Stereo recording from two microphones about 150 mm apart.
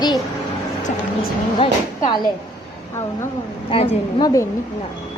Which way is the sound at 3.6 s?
40° left (ahead or behind).